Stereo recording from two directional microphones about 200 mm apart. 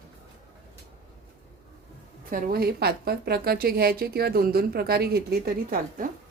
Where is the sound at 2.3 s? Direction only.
45° right (ahead or behind).